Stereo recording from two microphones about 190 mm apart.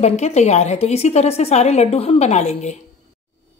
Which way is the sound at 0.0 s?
35° left (ahead or behind).